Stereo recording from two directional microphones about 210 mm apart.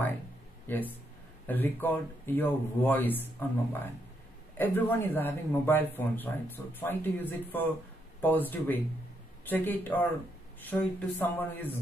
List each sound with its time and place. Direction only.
0.7 s speech: 10° left (ahead or behind)